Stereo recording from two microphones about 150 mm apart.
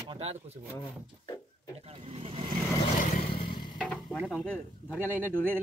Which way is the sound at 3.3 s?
35° left (ahead or behind).